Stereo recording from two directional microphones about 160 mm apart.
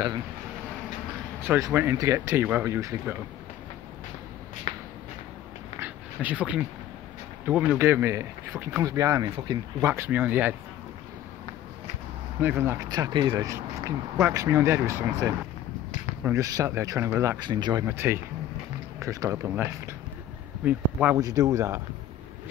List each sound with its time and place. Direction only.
1.4 s speech: 15° right (ahead or behind)
4.7 s a sound: 45° left (ahead or behind)
5.8 s dog: 10° right (ahead or behind)
7.4 s speech: 10° right (ahead or behind)
9.8 s speech: 10° right (ahead or behind)
12.4 s speech: 15° right (ahead or behind)
17.4 s speech: 25° right (ahead or behind)
17.8 s speech: 15° right (ahead or behind)
21.2 s speech: 20° right (ahead or behind)